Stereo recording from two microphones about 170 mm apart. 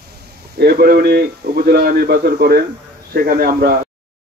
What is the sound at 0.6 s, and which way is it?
Speech, 65° right (ahead or behind).